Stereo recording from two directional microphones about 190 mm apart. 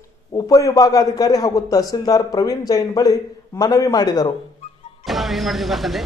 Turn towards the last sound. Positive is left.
turn(degrees=0)  # may be behind; listen again after turning